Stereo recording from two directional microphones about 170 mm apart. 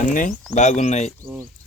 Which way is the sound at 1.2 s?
15° right (ahead or behind).